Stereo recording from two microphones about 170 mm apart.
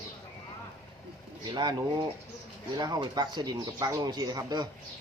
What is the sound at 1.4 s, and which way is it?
Speech, 25° right (ahead or behind).